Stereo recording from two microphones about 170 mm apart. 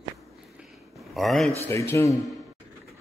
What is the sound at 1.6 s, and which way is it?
Speech, 15° left (ahead or behind).